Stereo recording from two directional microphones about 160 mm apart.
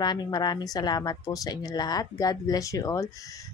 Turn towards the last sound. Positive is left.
turn(degrees=20)  # may be behind; listen again after turning